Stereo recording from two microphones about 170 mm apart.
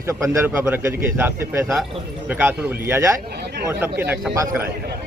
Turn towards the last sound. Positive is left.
turn(degrees=-15)  # may be behind; listen again after turning